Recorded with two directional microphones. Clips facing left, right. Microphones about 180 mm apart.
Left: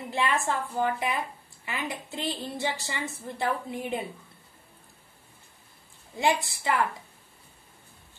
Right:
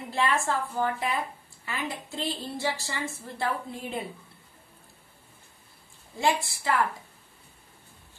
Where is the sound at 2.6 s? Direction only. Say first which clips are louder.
Right 1 dB; 20° left (ahead or behind).